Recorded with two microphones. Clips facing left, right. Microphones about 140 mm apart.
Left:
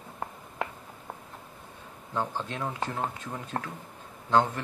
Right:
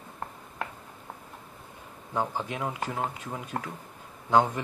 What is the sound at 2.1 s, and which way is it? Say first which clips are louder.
Speech: right 2 dB; 15° right (ahead or behind).